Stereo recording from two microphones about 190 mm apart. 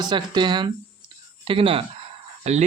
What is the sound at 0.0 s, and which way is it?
Speech, 25° right (ahead or behind).